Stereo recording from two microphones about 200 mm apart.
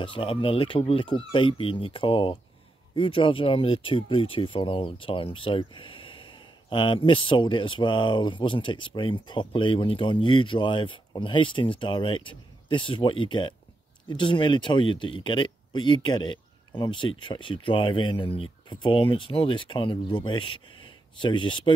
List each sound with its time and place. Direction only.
0.0 s speech: 25° left (ahead or behind)